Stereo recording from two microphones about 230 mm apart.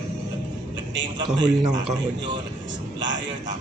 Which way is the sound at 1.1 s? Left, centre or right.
Centre.